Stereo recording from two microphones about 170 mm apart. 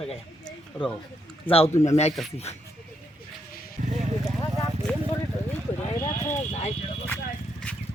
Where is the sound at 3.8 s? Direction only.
50° right (ahead or behind).